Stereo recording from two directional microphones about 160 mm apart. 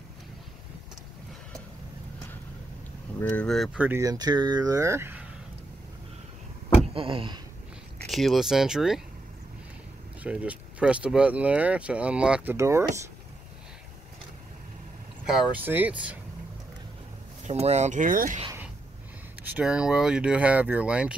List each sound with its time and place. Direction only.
3.2 s speech: 10° left (ahead or behind)
3.8 s speech: 15° right (ahead or behind)
6.9 s speech: 35° right (ahead or behind)
8.1 s speech: centre (ahead or behind)
10.2 s speech: 10° right (ahead or behind)
12.5 s speech: 20° right (ahead or behind)
15.5 s speech: 10° right (ahead or behind)
17.5 s speech: 45° right (ahead or behind)
19.4 s speech: 10° right (ahead or behind)